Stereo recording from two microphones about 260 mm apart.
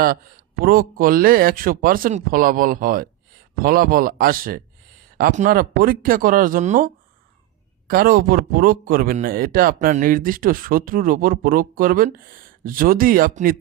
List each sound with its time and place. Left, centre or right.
0.0 s a man's voice: right